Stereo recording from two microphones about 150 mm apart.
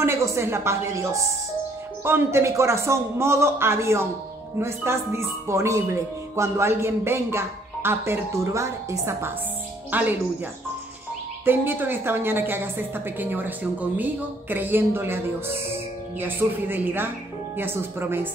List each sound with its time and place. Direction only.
0.0 s speech: 20° right (ahead or behind)
11.4 s speech: 15° right (ahead or behind)